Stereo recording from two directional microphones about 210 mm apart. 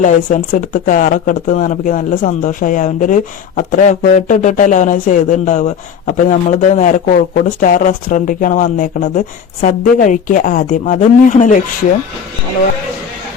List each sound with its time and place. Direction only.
0.0 s speech: 35° left (ahead or behind)